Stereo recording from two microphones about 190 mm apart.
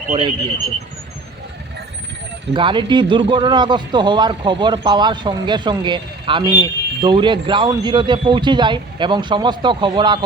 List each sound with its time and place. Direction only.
0.1 s a man's voice: 25° right (ahead or behind)
2.5 s a man's voice: 25° right (ahead or behind)